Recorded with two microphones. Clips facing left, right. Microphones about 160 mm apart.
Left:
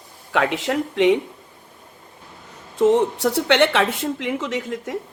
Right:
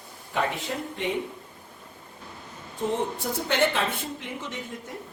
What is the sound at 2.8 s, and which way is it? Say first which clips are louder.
Speech: left 11 dB; 80° left.